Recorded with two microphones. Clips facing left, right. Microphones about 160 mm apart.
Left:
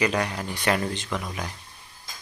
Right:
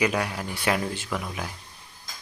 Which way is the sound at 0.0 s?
5° right (ahead or behind).